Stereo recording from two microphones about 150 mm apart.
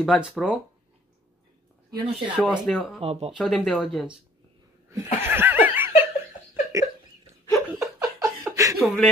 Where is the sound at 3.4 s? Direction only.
5° left (ahead or behind).